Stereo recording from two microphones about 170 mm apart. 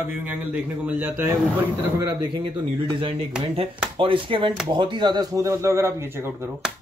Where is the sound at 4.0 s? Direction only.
30° right (ahead or behind); by 6.3 s 15° right (ahead or behind).